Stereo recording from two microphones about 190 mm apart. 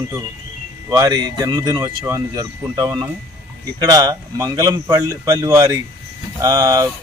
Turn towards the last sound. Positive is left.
turn(degrees=-20)  # may be behind; listen again after turning